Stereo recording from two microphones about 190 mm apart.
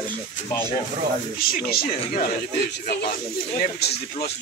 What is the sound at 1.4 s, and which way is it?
Speech, 50° left (ahead or behind).